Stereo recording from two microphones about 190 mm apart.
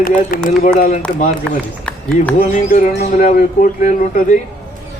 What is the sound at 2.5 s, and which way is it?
Speech, 45° left (ahead or behind).